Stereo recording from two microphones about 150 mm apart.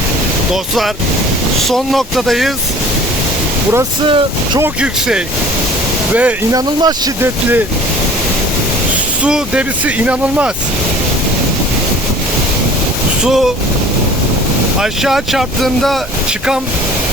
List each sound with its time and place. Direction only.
1.5 s speech: centre (ahead or behind)
4.0 s speech: 35° right (ahead or behind)
4.6 s speech: 5° right (ahead or behind)
6.5 s speech: 25° right (ahead or behind)
9.2 s speech: 10° right (ahead or behind)
13.2 s speech: centre (ahead or behind)
14.8 s speech: 5° right (ahead or behind)